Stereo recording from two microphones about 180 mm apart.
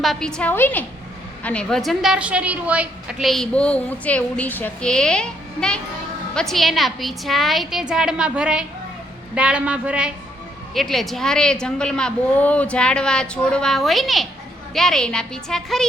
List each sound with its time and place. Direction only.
0.0 s a woman's voice: centre (ahead or behind)